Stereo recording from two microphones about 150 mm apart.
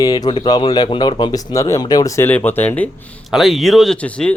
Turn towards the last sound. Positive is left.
turn(degrees=10)  # may be behind; listen again after turning